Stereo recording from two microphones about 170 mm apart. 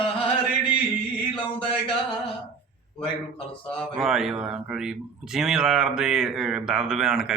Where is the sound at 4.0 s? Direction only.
Centre (ahead or behind).